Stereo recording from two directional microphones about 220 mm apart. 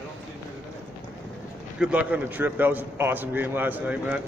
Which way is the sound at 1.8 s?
5° right (ahead or behind).